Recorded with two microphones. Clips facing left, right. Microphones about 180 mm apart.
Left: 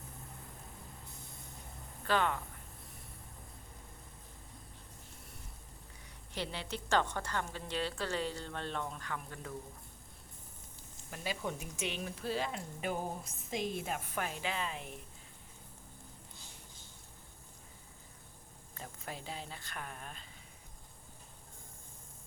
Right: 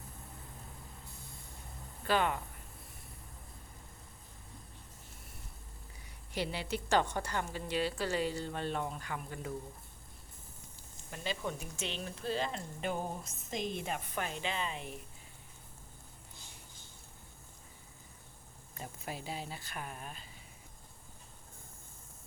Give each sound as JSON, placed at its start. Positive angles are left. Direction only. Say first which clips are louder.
{"t": 2.0, "sound": "a woman's voice", "louder": "right 1 dB", "side_deg": -15}
{"t": 6.3, "sound": "a woman's voice", "louder": "right 4 dB", "side_deg": -10}
{"t": 11.1, "sound": "speech", "louder": "right 1 dB", "side_deg": 10}
{"t": 18.7, "sound": "speech", "louder": "right 2 dB", "side_deg": -10}